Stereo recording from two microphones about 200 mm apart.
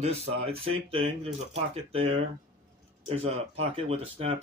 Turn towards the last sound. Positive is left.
turn(degrees=-30)  # may be behind; listen again after turning